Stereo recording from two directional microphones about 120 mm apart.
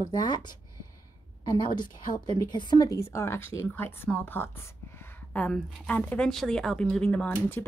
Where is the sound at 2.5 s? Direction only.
40° left (ahead or behind); by 7.3 s 10° left (ahead or behind).